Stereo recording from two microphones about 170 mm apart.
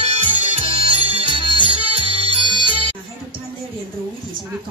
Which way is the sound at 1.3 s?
30° right (ahead or behind).